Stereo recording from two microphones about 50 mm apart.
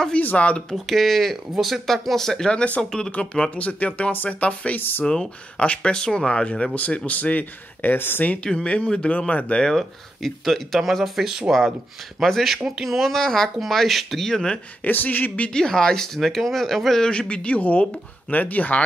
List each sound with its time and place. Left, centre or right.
0.2 s speech: left
0.7 s speech: centre; by 4.7 s left
4.7 s speech: left
5.0 s speech: centre; by 8.4 s left
8.6 s speech: left
9.6 s speech: centre
12.2 s speech: centre
14.8 s speech: left
15.5 s speech: centre
17.1 s speech: left